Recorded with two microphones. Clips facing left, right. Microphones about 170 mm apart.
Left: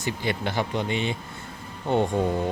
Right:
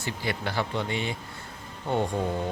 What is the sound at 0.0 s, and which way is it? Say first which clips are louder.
Speech: left 3 dB; 20° left (ahead or behind).